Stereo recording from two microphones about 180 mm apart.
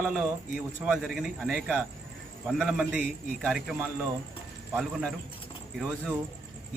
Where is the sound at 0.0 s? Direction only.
5° right (ahead or behind).